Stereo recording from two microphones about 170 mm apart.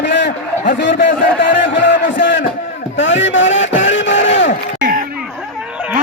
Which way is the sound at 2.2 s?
90° left.